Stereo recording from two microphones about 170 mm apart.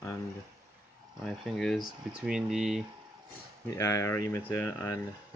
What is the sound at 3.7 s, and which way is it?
Speech, 20° left (ahead or behind).